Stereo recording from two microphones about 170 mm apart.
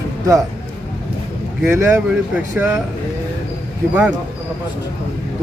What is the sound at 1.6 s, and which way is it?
Speech, 15° right (ahead or behind).